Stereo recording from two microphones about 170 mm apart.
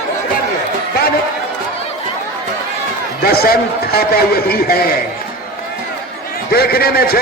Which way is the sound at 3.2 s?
65° left (ahead or behind).